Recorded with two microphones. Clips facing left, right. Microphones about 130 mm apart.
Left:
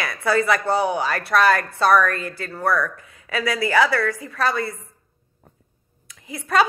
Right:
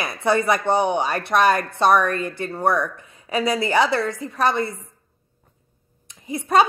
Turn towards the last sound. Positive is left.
turn(degrees=-25)  # may be behind; listen again after turning